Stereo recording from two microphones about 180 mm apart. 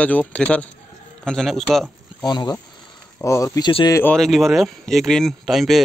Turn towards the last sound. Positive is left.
turn(degrees=0)  # may be behind; listen again after turning